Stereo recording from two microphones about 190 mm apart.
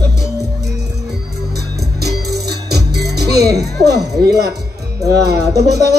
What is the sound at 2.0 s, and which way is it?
Music, 60° right (ahead or behind).